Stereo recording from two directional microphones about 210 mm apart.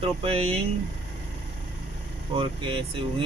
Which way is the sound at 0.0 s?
25° right (ahead or behind).